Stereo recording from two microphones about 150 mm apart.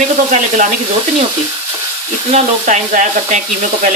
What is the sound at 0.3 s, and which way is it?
Sizzle, 55° right (ahead or behind).